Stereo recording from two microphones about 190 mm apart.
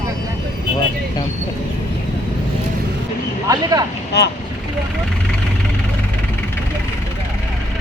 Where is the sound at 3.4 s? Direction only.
20° right (ahead or behind).